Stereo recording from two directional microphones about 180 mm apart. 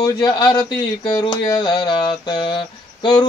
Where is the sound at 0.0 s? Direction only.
20° left (ahead or behind).